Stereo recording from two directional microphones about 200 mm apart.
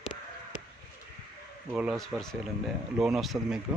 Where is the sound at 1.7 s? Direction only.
5° right (ahead or behind).